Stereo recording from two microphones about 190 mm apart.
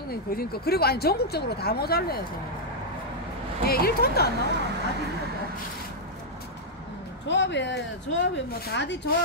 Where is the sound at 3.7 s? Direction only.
55° left (ahead or behind).